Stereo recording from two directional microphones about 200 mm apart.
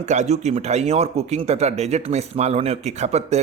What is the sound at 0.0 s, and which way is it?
A man's voice, 35° right (ahead or behind).